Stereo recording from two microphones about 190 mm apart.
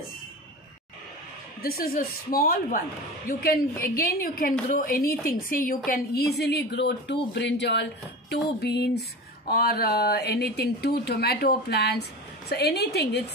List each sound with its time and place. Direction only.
1.6 s a woman's voice: 50° left (ahead or behind)